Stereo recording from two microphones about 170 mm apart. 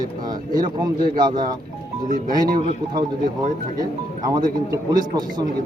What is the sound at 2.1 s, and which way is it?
Speech, 55° right (ahead or behind).